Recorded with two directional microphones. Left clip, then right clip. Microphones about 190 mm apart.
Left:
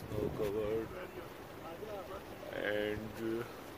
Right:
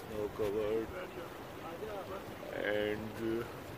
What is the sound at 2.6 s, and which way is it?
Speech, 10° left (ahead or behind).